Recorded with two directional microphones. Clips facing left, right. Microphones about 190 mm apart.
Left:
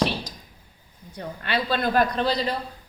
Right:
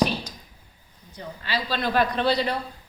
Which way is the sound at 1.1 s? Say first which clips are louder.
Left 3 dB; 60° left (ahead or behind).